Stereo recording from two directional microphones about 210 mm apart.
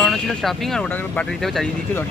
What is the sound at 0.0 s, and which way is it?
Speech, centre (ahead or behind).